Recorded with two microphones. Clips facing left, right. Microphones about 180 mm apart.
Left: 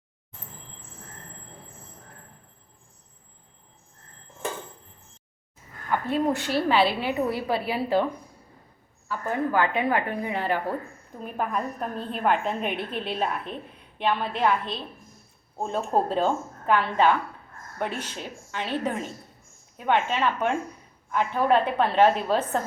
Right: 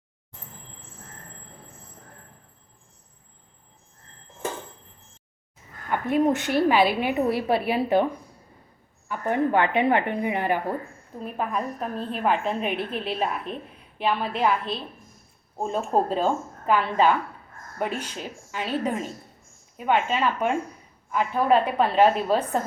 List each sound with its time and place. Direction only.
5.9 s a woman's voice: 15° right (ahead or behind)
9.0 s a woman's voice: 25° right (ahead or behind)
11.2 s a woman's voice: centre (ahead or behind)